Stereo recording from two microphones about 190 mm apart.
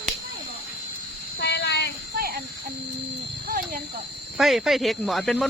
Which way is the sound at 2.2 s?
50° right (ahead or behind).